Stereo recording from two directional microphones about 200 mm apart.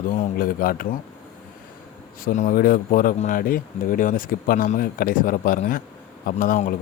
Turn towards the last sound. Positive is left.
turn(degrees=40)  # may be behind; listen again after turning